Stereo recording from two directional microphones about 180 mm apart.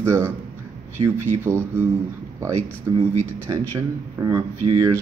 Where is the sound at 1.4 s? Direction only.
15° right (ahead or behind).